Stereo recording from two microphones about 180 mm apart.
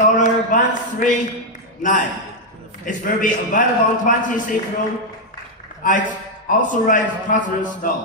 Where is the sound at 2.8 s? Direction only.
50° left (ahead or behind).